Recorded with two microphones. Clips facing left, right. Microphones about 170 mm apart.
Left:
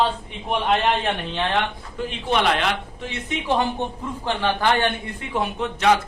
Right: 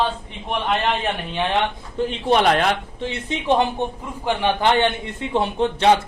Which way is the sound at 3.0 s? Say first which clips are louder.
Right 3 dB; 30° right (ahead or behind).